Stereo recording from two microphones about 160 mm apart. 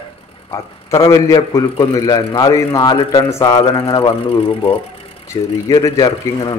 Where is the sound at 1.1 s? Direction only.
20° left (ahead or behind); by 4.7 s 35° left (ahead or behind).